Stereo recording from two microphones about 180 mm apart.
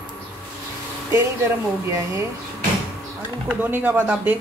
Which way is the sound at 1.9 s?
15° right (ahead or behind).